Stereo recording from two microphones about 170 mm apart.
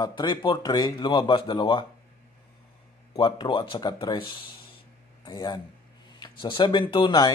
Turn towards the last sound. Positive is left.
turn(degrees=25)  # may be behind; listen again after turning